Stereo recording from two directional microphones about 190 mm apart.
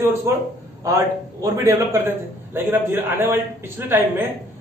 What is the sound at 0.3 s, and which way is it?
A man's voice, 15° right (ahead or behind).